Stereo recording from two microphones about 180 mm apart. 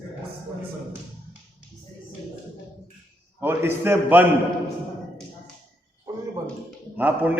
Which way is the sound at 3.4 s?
10° right (ahead or behind).